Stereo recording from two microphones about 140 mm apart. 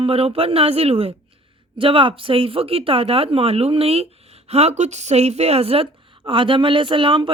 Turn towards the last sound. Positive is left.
turn(degrees=-35)  # may be behind; listen again after turning